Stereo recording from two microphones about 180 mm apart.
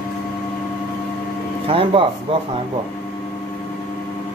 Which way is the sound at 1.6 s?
30° right (ahead or behind).